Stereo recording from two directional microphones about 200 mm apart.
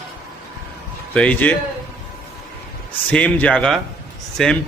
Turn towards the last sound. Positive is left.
turn(degrees=0)  # may be behind; listen again after turning